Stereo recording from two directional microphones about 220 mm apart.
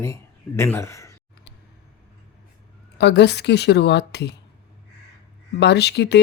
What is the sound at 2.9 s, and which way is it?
Speech, 50° left (ahead or behind).